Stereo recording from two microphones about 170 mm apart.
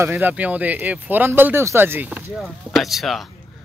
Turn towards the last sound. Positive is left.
turn(degrees=0)  # may be behind; listen again after turning